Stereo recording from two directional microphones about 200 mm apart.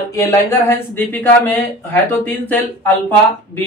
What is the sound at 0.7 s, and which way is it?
A man's voice, 10° left (ahead or behind).